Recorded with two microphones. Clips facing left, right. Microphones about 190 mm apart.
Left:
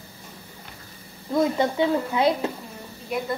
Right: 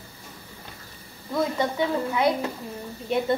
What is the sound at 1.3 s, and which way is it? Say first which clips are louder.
Speech: left 3 dB; 20° left (ahead or behind).